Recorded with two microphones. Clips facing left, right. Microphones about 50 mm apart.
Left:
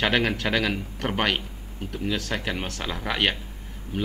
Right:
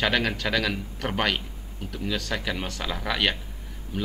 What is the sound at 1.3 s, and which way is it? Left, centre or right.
Speech, left.